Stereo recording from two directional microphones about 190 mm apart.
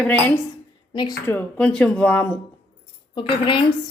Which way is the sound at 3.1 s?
25° left (ahead or behind).